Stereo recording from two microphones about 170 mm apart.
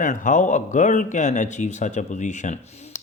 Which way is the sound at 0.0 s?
50° left (ahead or behind).